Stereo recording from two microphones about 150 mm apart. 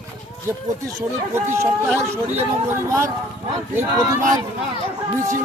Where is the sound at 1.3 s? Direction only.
15° right (ahead or behind).